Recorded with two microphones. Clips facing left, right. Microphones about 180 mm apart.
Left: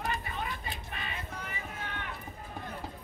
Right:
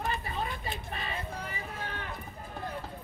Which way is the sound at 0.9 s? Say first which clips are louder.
Right 3 dB; 35° right (ahead or behind).